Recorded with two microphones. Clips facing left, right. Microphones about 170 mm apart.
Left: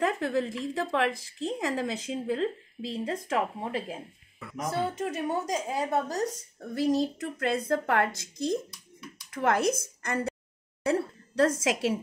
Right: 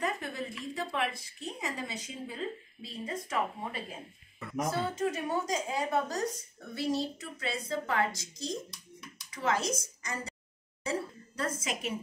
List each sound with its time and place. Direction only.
0.0 s a woman's voice: 90° left
4.4 s speech: 5° left (ahead or behind)
5.4 s a woman's voice: 30° left (ahead or behind)
6.6 s a woman's voice: 40° left (ahead or behind); by 12.0 s 90° left